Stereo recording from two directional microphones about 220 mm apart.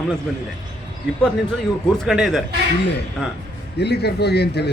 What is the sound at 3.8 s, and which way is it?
Speech, 50° left (ahead or behind).